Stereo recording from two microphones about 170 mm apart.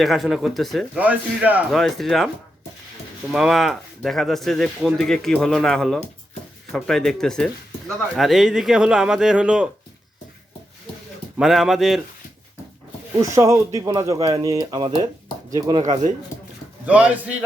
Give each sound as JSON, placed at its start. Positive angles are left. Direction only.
{"t": 0.0, "sound": "speech", "side_deg": 0}
{"t": 3.3, "sound": "speech", "side_deg": 0}
{"t": 11.3, "sound": "speech", "side_deg": 0}
{"t": 13.1, "sound": "a man's voice", "side_deg": -20}
{"t": 16.8, "sound": "a man's voice", "side_deg": -10}